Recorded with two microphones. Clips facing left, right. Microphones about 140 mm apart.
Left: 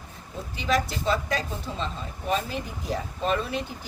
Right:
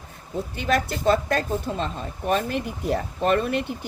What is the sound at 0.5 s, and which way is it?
Speech, 55° right (ahead or behind).